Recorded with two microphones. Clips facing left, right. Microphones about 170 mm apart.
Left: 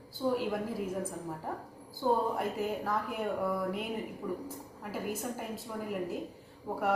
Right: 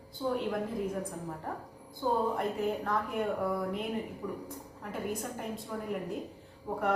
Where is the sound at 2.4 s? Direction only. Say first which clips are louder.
Right 1 dB; 5° left (ahead or behind).